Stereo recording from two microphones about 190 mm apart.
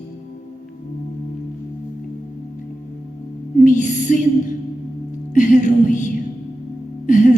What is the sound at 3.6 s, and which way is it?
Music, 40° left (ahead or behind).